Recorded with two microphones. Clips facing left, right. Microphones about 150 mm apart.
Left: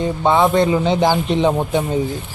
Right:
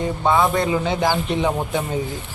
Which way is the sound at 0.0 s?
25° left (ahead or behind).